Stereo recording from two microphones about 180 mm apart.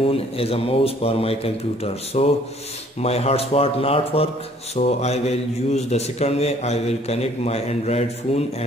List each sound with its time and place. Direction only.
0.0 s a man's voice: 30° left (ahead or behind)